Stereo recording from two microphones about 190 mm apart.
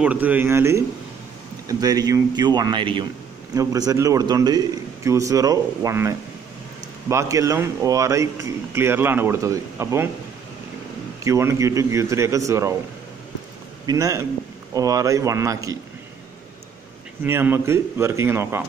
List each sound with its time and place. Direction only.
0.0 s a man's voice: 10° right (ahead or behind)
11.2 s speech: 15° right (ahead or behind)
13.8 s speech: 15° right (ahead or behind)
17.2 s speech: 10° right (ahead or behind)